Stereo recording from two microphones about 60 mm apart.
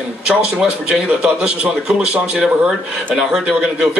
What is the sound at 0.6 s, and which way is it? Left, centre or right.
A man's voice, centre.